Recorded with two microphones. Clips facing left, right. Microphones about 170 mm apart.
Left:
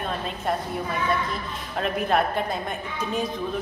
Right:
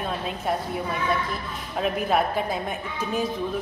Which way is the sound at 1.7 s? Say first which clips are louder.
Even; 5° right (ahead or behind).